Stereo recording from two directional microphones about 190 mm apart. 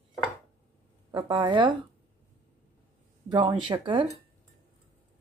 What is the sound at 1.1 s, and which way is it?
Speech, 20° right (ahead or behind).